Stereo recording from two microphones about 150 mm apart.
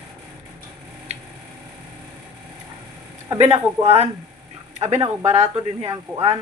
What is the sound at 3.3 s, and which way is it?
Speech, 45° right (ahead or behind).